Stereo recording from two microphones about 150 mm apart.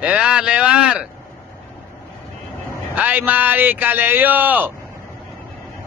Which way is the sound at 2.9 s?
10° right (ahead or behind).